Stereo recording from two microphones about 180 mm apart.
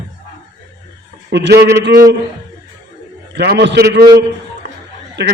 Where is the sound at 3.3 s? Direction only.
70° right (ahead or behind).